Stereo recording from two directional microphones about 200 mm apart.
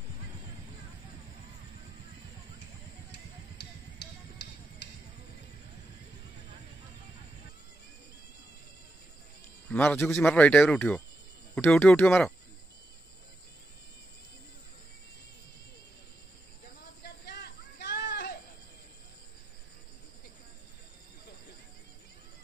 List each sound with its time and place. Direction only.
4.0 s music: 60° left (ahead or behind)
9.7 s speech: 10° left (ahead or behind)
17.0 s a sound: 55° left (ahead or behind)